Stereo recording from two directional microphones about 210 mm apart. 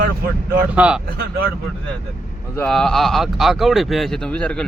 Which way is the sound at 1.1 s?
45° right (ahead or behind).